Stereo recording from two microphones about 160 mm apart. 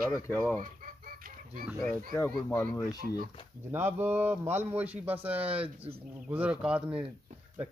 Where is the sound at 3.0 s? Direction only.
55° right (ahead or behind).